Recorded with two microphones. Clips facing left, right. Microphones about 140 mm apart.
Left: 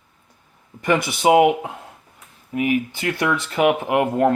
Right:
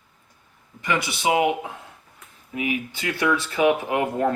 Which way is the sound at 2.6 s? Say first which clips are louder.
Left 6 dB; 45° left (ahead or behind).